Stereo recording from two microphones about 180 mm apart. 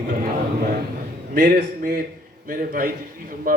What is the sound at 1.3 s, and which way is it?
Speech, 55° right (ahead or behind).